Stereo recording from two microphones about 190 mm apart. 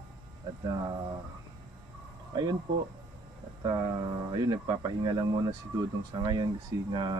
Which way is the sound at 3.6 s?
20° right (ahead or behind).